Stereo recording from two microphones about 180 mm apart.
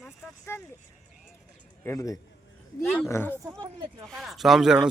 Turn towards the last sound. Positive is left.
turn(degrees=-5)  # may be behind; listen again after turning